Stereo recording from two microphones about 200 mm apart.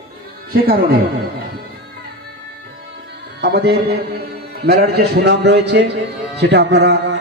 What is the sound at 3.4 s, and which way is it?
A man's voice, 55° right (ahead or behind).